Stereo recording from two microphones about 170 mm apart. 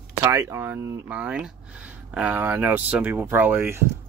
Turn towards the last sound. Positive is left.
turn(degrees=-15)  # may be behind; listen again after turning